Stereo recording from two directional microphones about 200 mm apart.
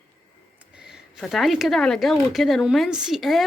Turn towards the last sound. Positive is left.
turn(degrees=0)  # may be behind; listen again after turning